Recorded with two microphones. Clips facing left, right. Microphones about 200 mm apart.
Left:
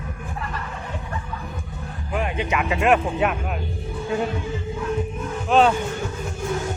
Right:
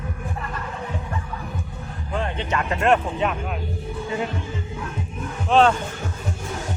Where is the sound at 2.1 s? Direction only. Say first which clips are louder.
Left 2 dB; 10° left (ahead or behind).